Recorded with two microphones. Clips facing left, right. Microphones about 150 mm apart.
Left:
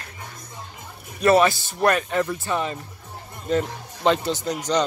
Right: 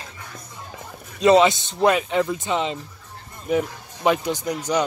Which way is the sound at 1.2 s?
20° right (ahead or behind).